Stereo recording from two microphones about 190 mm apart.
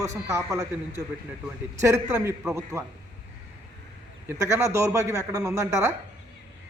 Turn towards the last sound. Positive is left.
turn(degrees=-15)  # may be behind; listen again after turning